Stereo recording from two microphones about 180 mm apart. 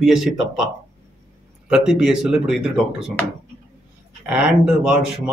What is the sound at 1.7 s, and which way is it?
Speech, 5° right (ahead or behind).